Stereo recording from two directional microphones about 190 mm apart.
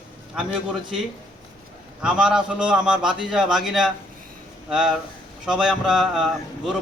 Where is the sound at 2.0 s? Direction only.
5° right (ahead or behind).